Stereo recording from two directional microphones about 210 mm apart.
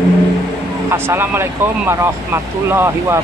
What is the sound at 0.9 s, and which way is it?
Speech, 10° right (ahead or behind).